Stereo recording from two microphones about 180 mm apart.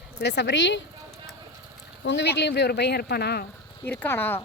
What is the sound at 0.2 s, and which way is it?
Speech, 75° left (ahead or behind).